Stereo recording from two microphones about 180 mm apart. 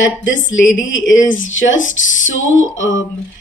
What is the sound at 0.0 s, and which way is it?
Speech, 90° left.